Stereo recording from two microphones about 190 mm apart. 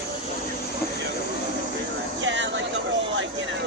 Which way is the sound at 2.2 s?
75° right (ahead or behind).